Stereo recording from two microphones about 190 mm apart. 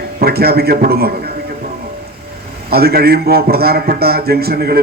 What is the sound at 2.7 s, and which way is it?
A man's voice, 55° right (ahead or behind).